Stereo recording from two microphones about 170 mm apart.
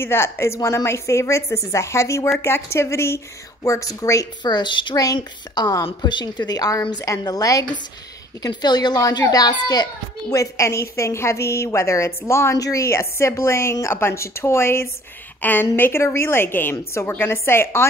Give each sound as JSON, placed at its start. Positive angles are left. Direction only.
{"t": 0.0, "sound": "a woman's voice", "side_deg": 15}